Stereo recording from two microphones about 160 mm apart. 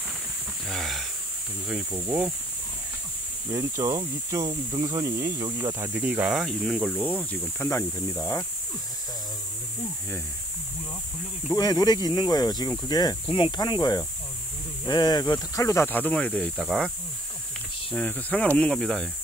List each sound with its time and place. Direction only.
0.7 s a sound: centre (ahead or behind)
1.9 s speech: 15° right (ahead or behind)
3.4 s speech: 20° right (ahead or behind); by 8.5 s 20° left (ahead or behind)
11.5 s speech: 25° left (ahead or behind); by 16.9 s centre (ahead or behind)
17.9 s speech: 10° left (ahead or behind)